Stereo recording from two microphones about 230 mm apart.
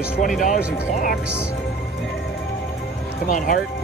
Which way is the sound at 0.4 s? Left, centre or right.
Left.